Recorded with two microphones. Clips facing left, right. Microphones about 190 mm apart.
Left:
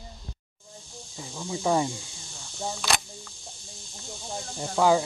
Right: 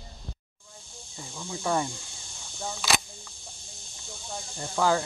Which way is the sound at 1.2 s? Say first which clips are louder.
Left 4 dB; 10° left (ahead or behind).